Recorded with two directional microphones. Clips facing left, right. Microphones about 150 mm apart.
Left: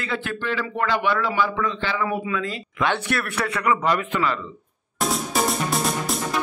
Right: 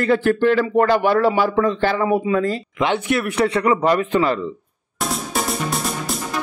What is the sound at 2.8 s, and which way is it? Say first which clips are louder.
Speech: right 3 dB; 20° right (ahead or behind).